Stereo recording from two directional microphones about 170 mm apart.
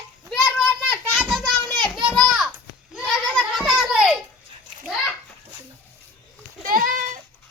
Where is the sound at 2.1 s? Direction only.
Centre (ahead or behind).